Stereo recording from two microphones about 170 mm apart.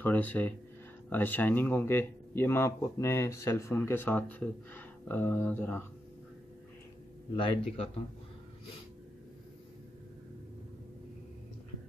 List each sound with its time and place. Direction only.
0.0 s speech: 10° left (ahead or behind)
7.3 s speech: 30° left (ahead or behind)